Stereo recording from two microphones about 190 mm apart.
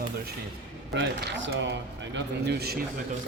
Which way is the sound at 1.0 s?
70° right (ahead or behind).